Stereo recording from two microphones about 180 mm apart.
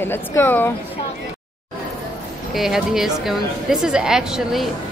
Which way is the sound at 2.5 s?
Centre (ahead or behind).